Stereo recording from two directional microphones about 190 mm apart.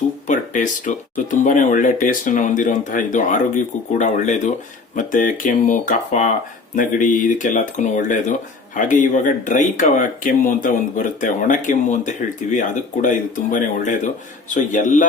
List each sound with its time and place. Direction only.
0.3 s speech: 40° left (ahead or behind)